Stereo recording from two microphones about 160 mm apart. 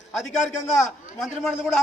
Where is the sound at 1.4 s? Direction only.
5° left (ahead or behind).